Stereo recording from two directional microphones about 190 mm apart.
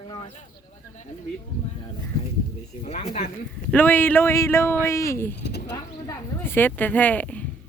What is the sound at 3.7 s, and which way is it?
Speech, 10° left (ahead or behind).